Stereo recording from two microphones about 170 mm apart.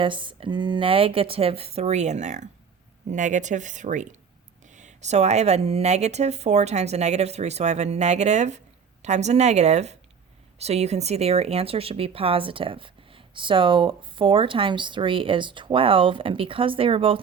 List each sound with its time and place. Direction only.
0.0 s speech: 30° right (ahead or behind)